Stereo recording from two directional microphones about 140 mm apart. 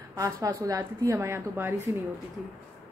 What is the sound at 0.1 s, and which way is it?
A man's voice, 25° right (ahead or behind).